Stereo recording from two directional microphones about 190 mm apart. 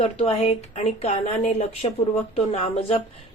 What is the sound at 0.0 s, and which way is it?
A woman's voice, 35° left (ahead or behind).